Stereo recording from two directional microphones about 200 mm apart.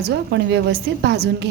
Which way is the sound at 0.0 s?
60° right (ahead or behind).